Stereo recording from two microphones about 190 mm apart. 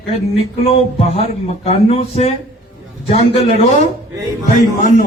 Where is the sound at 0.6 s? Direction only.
30° left (ahead or behind).